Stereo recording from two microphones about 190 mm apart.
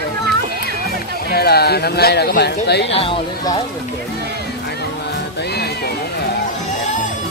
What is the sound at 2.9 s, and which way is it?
Speech, 30° left (ahead or behind).